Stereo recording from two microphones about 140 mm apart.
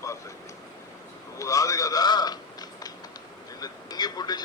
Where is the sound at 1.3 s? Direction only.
25° left (ahead or behind).